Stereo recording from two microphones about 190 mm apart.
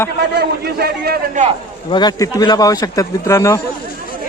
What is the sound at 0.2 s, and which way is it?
A man's voice, 55° right (ahead or behind).